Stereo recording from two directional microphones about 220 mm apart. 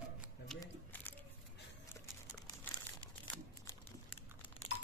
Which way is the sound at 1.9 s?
20° left (ahead or behind).